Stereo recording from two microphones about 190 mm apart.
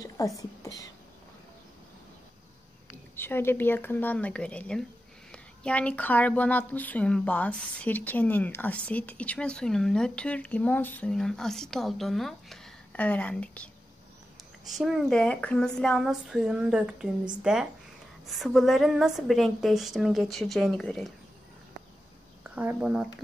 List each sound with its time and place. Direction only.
0.4 s speech: 20° left (ahead or behind)
3.2 s speech: 10° left (ahead or behind)
14.7 s speech: centre (ahead or behind)
22.4 s speech: 10° right (ahead or behind)